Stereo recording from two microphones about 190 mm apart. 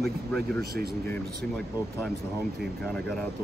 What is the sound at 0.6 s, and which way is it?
Speech, 55° right (ahead or behind).